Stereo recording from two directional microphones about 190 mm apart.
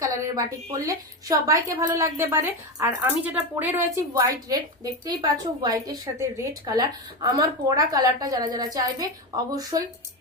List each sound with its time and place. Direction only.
0.2 s a woman's voice: 15° right (ahead or behind)